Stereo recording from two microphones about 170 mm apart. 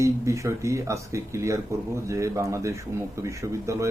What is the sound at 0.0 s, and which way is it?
A man's voice, 15° right (ahead or behind).